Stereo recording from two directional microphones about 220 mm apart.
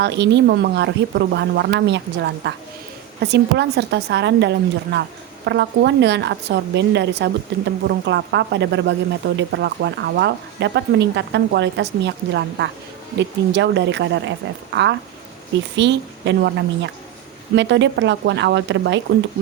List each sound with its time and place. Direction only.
0.0 s a woman's voice: 50° right (ahead or behind)